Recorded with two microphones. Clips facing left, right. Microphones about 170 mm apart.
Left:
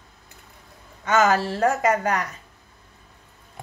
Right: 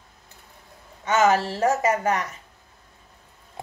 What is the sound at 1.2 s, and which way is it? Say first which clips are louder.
Speech: right 2 dB; 20° right (ahead or behind).